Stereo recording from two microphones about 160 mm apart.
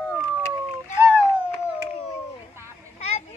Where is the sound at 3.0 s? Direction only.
40° left (ahead or behind).